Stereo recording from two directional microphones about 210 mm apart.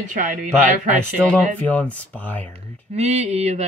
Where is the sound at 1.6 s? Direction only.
5° left (ahead or behind).